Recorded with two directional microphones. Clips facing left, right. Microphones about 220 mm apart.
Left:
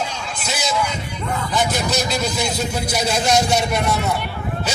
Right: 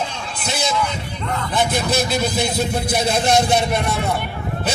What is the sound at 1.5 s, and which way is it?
A man's voice, 55° right (ahead or behind).